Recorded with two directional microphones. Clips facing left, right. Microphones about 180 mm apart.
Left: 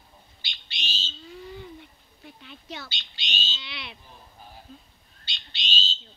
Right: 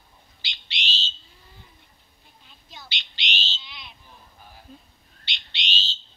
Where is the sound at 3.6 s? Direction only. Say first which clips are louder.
Left 5 dB; 80° left.